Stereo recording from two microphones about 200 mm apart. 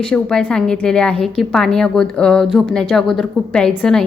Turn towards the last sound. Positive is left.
turn(degrees=5)  # may be behind; listen again after turning